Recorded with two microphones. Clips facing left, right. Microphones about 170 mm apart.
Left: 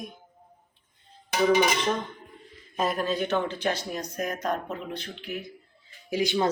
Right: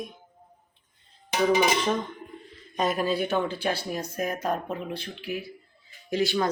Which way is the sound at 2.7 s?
Centre (ahead or behind).